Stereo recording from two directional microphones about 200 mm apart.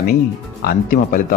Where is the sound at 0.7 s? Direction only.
45° left (ahead or behind).